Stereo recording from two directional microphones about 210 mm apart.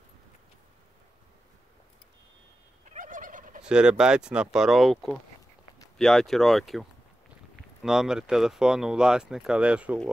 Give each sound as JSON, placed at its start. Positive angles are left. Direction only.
{"t": 2.9, "sound": "gobble", "side_deg": -40}
{"t": 3.6, "sound": "speech", "side_deg": -5}